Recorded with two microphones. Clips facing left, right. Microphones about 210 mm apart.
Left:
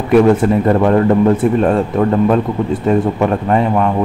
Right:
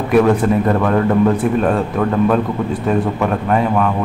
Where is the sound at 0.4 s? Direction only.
25° left (ahead or behind).